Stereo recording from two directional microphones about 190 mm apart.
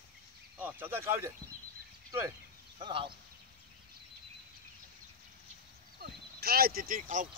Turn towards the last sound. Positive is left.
turn(degrees=-45)  # may be behind; listen again after turning